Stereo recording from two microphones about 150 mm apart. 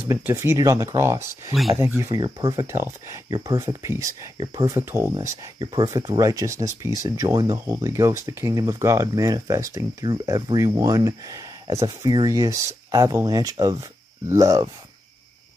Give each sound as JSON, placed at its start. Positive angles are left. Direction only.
{"t": 0.0, "sound": "speech", "side_deg": -15}
{"t": 2.1, "sound": "speech", "side_deg": -30}